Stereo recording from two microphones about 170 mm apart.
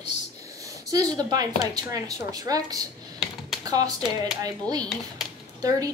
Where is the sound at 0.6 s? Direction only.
20° right (ahead or behind).